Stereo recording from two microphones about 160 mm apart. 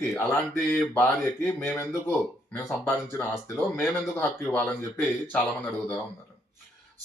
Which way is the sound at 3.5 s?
Centre (ahead or behind).